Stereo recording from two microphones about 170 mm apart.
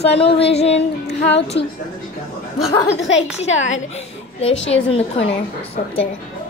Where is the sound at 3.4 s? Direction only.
90° left.